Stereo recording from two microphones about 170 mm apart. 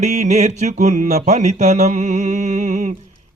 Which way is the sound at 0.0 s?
45° right (ahead or behind).